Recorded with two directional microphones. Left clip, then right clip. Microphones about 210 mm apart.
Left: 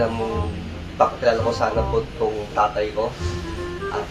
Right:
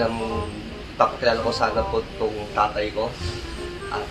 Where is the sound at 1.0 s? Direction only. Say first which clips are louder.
Left 2 dB; centre (ahead or behind).